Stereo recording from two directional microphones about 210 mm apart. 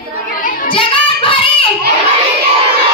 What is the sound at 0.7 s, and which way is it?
Child singing, 25° left (ahead or behind).